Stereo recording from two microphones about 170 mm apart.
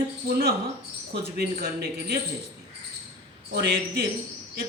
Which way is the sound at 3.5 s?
80° right.